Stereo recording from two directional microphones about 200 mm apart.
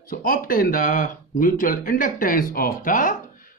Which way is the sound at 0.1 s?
45° left (ahead or behind).